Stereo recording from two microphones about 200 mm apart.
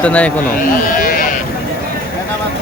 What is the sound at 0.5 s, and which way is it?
Speech, 45° left (ahead or behind).